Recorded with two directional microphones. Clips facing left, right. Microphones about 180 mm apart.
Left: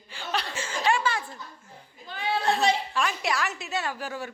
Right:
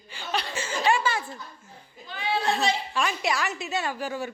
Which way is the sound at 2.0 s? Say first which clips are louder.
Right 1 dB; 50° left (ahead or behind).